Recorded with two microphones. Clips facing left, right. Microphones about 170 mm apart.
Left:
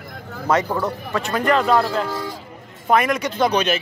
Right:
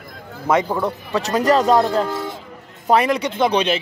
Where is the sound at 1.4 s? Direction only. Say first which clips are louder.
Right 3 dB; 40° right (ahead or behind).